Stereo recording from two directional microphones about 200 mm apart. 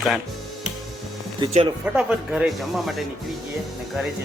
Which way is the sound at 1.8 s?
5° right (ahead or behind).